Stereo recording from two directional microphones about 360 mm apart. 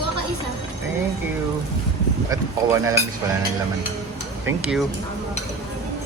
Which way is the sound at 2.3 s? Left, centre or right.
Centre.